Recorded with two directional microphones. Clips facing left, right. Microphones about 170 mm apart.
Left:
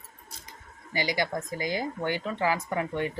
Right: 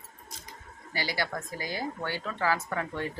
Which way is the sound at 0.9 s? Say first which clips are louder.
Left 4 dB; 20° left (ahead or behind).